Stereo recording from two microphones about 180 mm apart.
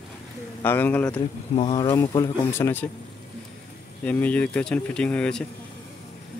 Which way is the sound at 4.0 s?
5° left (ahead or behind).